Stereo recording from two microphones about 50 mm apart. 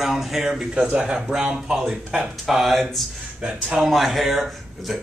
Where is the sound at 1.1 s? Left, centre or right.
Centre.